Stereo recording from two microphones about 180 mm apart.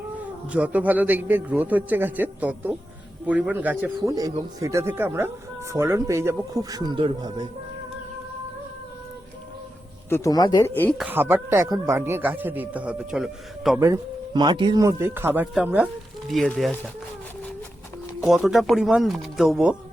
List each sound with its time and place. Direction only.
0.5 s a man's voice: 10° right (ahead or behind); by 7.4 s 25° right (ahead or behind)
10.1 s speech: 15° left (ahead or behind)
10.9 s a man's voice: 10° right (ahead or behind)
13.7 s a man's voice: 20° right (ahead or behind); by 16.7 s centre (ahead or behind)
18.3 s speech: centre (ahead or behind)